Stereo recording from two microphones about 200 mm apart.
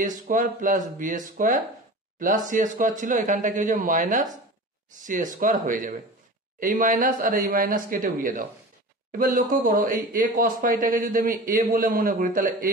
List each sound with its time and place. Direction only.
0.0 s speech: 40° right (ahead or behind)